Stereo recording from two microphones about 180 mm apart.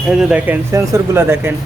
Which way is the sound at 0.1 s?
5° right (ahead or behind).